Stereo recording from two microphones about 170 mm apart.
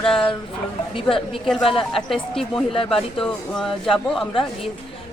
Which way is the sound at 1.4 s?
Centre (ahead or behind).